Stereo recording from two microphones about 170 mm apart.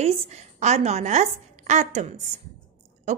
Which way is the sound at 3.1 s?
45° right (ahead or behind).